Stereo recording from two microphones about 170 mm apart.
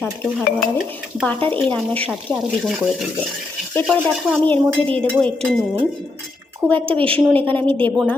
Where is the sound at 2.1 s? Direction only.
Centre (ahead or behind).